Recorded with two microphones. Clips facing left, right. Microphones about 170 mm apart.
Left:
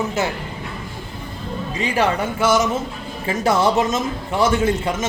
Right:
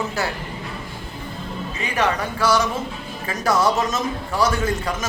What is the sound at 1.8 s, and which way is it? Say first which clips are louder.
Speech: left 3 dB; 30° left (ahead or behind).